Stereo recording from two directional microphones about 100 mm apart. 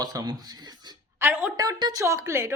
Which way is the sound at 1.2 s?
15° right (ahead or behind).